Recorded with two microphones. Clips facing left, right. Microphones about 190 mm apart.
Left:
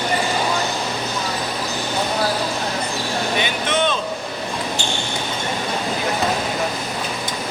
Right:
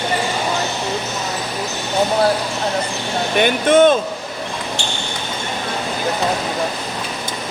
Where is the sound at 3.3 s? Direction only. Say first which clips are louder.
Right 12 dB; 50° right (ahead or behind).